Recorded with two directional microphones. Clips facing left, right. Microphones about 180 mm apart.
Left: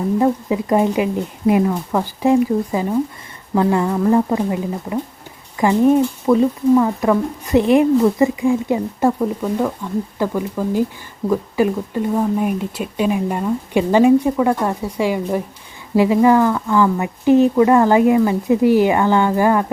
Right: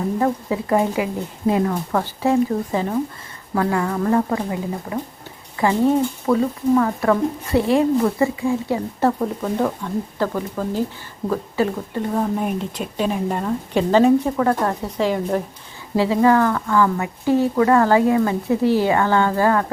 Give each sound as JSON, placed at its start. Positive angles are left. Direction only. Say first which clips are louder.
{"t": 0.2, "sound": "speech", "louder": "left 4 dB", "side_deg": 20}